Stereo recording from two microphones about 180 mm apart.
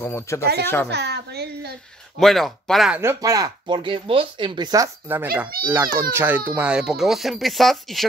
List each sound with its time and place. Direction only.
0.0 s speech: 15° left (ahead or behind)
0.8 s speech: 65° right (ahead or behind)
2.1 s speech: centre (ahead or behind)
3.0 s speech: 15° right (ahead or behind)
5.0 s a child's voice: 10° right (ahead or behind)